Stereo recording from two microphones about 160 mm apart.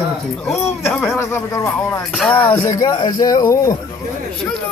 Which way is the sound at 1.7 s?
5° left (ahead or behind).